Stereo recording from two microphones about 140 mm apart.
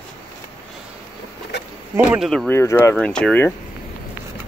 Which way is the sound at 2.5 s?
20° left (ahead or behind).